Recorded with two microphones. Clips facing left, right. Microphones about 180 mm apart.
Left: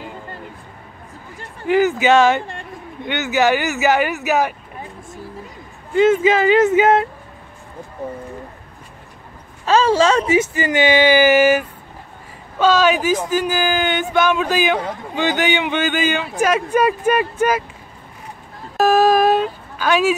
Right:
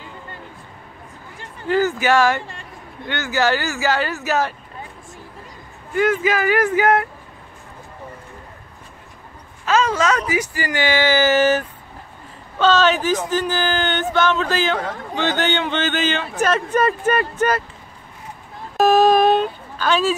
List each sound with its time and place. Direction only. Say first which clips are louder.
1.7 s speech: left 3 dB; 20° left (ahead or behind)
5.9 s speech: left 5 dB; 25° left (ahead or behind)
9.7 s speech: left 4 dB; 30° left (ahead or behind); by 17.6 s 10° left (ahead or behind)
18.8 s a sound: even; 5° left (ahead or behind)